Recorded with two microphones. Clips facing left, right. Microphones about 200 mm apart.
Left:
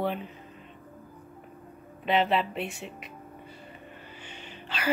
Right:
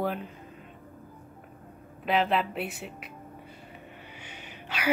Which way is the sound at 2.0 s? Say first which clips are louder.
Left 1 dB; centre (ahead or behind).